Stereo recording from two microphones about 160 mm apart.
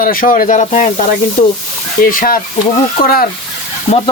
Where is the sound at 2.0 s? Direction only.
60° left (ahead or behind).